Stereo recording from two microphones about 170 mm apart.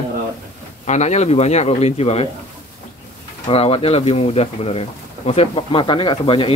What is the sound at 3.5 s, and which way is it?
Speech, 35° left (ahead or behind).